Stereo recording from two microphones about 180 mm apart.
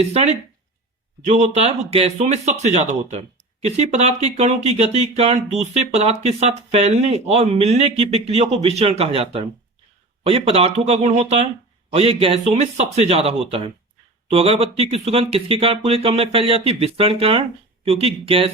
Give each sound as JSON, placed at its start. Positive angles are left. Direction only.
{"t": 0.0, "sound": "speech", "side_deg": -35}